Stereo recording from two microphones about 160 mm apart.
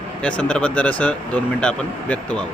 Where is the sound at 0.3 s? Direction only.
5° left (ahead or behind).